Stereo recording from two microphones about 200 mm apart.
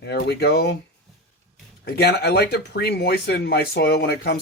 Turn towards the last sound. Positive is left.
turn(degrees=55)  # may be behind; listen again after turning